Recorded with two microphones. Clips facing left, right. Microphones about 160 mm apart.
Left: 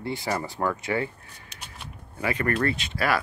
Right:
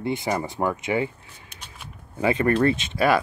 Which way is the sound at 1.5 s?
55° right (ahead or behind).